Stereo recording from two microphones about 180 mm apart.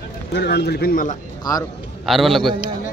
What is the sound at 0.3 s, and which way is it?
Speech, 65° left (ahead or behind).